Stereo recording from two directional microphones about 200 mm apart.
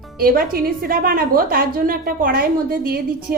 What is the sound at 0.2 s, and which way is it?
A woman's voice, 45° right (ahead or behind).